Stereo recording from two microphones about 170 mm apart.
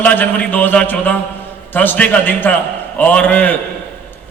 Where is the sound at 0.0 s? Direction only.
10° left (ahead or behind).